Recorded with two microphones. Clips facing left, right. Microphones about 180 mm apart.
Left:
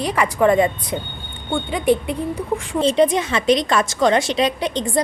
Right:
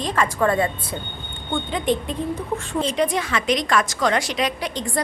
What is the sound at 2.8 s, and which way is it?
A woman's voice, 25° left (ahead or behind).